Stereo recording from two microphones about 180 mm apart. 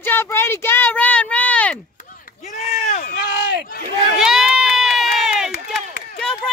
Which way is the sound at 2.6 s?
55° left (ahead or behind).